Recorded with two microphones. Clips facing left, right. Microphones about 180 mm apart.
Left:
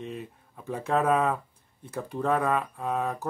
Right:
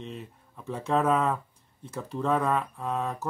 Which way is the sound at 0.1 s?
60° left (ahead or behind).